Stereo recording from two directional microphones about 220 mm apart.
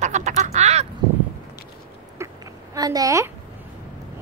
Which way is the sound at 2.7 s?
15° right (ahead or behind).